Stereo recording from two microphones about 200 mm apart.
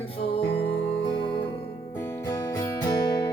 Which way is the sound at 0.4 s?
55° left (ahead or behind).